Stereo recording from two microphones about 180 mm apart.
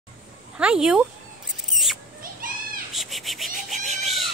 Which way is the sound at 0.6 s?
5° right (ahead or behind).